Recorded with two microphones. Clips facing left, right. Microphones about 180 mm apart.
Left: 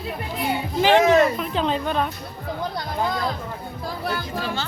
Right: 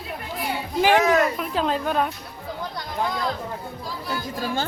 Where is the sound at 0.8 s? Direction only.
10° right (ahead or behind).